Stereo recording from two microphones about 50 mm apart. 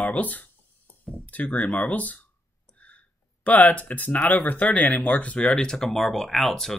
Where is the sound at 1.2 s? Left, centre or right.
Left.